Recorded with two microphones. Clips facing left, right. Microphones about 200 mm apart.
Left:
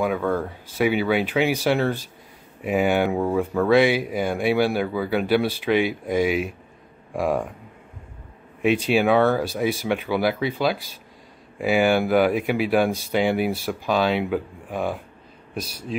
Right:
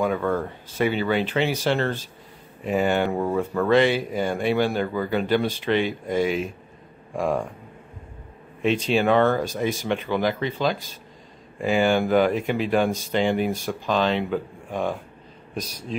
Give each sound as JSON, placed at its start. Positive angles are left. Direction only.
{"t": 0.0, "sound": "speech", "side_deg": 10}
{"t": 8.6, "sound": "speech", "side_deg": 10}